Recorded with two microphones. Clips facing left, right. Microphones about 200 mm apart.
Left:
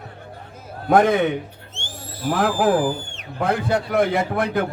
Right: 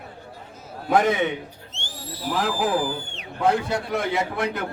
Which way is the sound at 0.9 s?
55° left (ahead or behind).